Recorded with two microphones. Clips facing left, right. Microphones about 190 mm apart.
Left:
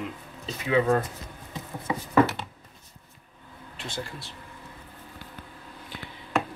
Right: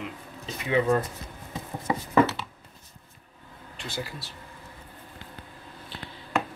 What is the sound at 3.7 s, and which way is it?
Speech, 5° right (ahead or behind).